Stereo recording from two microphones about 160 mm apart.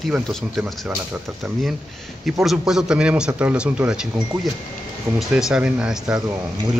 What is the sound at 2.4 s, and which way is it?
A man's voice, 5° right (ahead or behind).